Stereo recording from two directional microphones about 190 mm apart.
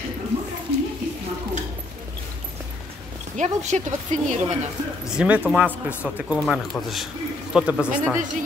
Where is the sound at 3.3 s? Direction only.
40° right (ahead or behind).